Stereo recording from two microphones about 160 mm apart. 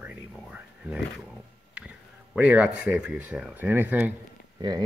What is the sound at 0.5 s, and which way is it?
Speech, 5° right (ahead or behind).